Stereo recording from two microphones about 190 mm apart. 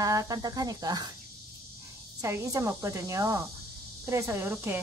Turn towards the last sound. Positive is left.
turn(degrees=-10)  # may be behind; listen again after turning